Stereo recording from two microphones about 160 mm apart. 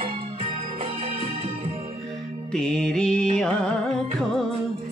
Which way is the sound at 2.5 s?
5° left (ahead or behind).